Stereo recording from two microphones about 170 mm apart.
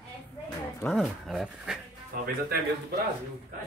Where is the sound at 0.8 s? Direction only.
Centre (ahead or behind).